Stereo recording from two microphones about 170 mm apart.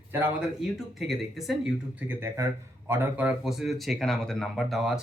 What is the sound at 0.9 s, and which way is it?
Speech, centre (ahead or behind).